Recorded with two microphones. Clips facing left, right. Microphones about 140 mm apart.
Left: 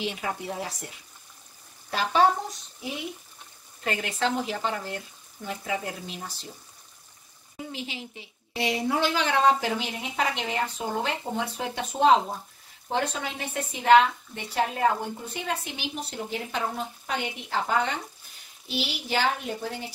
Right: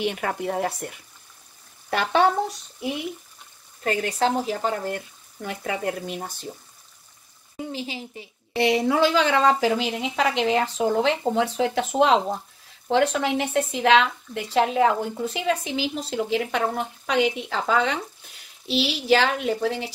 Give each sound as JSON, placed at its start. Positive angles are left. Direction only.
{"t": 0.0, "sound": "speech", "side_deg": -60}
{"t": 3.8, "sound": "a woman's voice", "side_deg": -40}
{"t": 5.4, "sound": "speech", "side_deg": -65}
{"t": 7.7, "sound": "a woman's voice", "side_deg": -35}
{"t": 8.5, "sound": "a woman's voice", "side_deg": -80}
{"t": 12.8, "sound": "a woman's voice", "side_deg": -80}